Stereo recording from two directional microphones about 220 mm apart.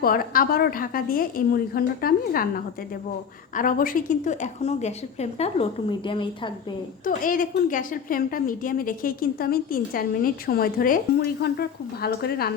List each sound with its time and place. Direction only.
0.0 s a woman's voice: 40° left (ahead or behind)
3.5 s a woman's voice: 40° left (ahead or behind); by 6.5 s 20° left (ahead or behind)
7.0 s a woman's voice: 40° left (ahead or behind)